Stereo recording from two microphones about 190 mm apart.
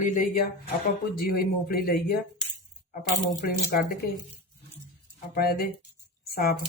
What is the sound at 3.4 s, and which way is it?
Speech, 50° left (ahead or behind).